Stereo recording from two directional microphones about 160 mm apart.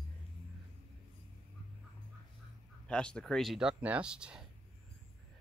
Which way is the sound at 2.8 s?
5° left (ahead or behind).